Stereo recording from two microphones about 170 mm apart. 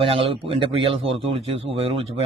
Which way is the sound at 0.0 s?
30° right (ahead or behind).